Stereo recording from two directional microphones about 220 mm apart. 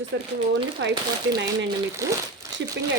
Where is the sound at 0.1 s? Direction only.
55° right (ahead or behind).